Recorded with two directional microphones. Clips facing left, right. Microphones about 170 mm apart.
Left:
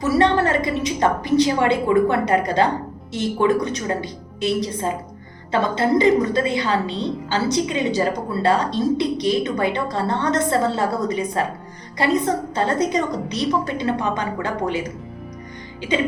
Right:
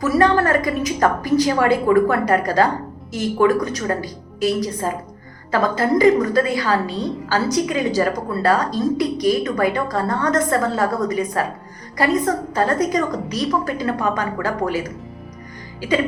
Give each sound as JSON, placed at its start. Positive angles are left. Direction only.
{"t": 0.0, "sound": "a woman's voice", "side_deg": 25}